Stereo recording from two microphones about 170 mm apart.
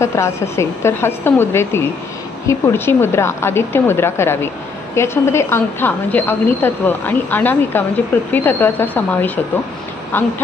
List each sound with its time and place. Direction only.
0.0 s a woman's voice: 15° left (ahead or behind)